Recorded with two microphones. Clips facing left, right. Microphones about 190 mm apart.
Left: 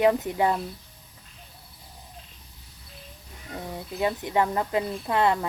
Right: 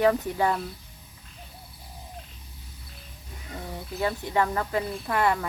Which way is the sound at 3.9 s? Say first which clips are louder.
Left 1 dB; 20° left (ahead or behind).